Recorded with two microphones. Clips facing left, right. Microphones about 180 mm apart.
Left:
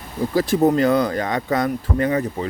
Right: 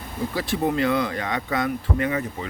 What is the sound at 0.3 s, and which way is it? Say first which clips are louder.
Speech: left 7 dB; 40° left (ahead or behind).